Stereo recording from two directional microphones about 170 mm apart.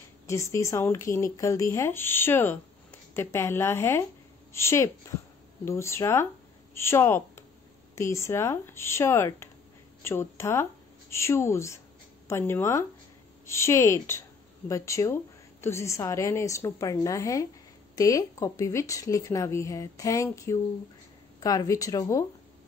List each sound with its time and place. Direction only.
0.3 s a woman's voice: 15° left (ahead or behind)